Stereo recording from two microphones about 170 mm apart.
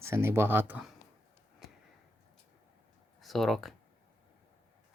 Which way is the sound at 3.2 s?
Centre (ahead or behind).